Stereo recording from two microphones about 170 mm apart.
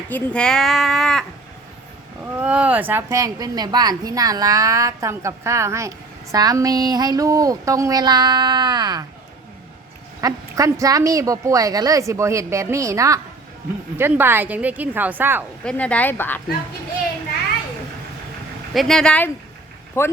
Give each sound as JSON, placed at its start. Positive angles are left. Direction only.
{"t": 0.1, "sound": "speech", "side_deg": 5}
{"t": 2.2, "sound": "speech", "side_deg": -10}
{"t": 10.2, "sound": "a woman's voice", "side_deg": -20}
{"t": 15.6, "sound": "speech", "side_deg": 10}
{"t": 18.7, "sound": "speech", "side_deg": 0}